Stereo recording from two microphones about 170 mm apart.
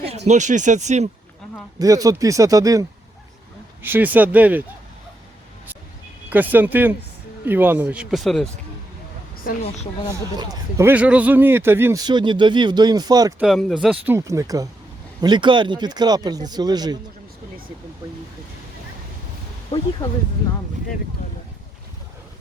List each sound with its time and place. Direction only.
0.3 s speech: 45° right (ahead or behind)
1.8 s a man's voice: 20° right (ahead or behind)
3.8 s speech: 10° right (ahead or behind)
6.3 s speech: 10° right (ahead or behind)
10.3 s a man's voice: 20° right (ahead or behind)
13.4 s a man's voice: centre (ahead or behind); by 17.0 s 25° right (ahead or behind)
20.0 s speech: 15° left (ahead or behind)